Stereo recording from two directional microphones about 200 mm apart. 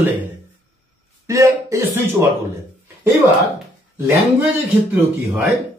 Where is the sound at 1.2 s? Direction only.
15° right (ahead or behind).